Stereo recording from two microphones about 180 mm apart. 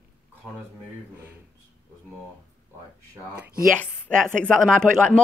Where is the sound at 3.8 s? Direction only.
5° left (ahead or behind).